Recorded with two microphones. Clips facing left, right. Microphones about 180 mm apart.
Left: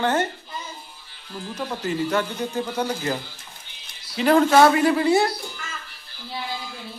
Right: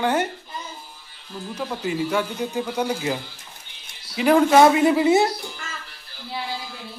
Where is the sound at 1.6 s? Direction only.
10° right (ahead or behind).